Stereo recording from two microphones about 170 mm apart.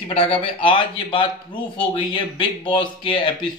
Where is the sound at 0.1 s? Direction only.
30° left (ahead or behind).